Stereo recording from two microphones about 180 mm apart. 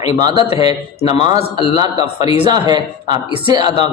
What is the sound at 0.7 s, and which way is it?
A man's voice, 35° left (ahead or behind).